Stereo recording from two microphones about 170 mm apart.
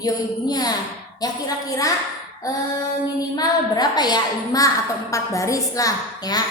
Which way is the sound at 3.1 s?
20° left (ahead or behind).